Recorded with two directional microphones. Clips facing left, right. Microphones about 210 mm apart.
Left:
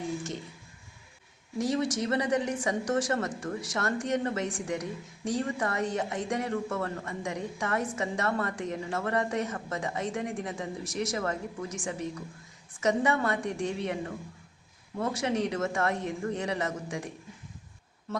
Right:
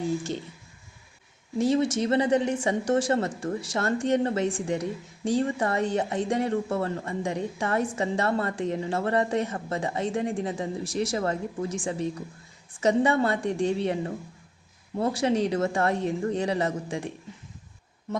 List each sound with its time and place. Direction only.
1.5 s a woman's voice: 25° right (ahead or behind)